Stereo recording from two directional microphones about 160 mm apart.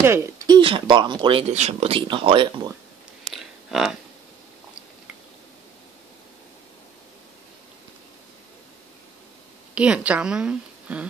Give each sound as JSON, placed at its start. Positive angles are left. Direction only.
{"t": 0.0, "sound": "speech", "side_deg": -15}
{"t": 0.6, "sound": "speech", "side_deg": -35}
{"t": 1.5, "sound": "speech", "side_deg": -45}
{"t": 3.3, "sound": "a sound", "side_deg": 0}
{"t": 9.8, "sound": "a woman's voice", "side_deg": -5}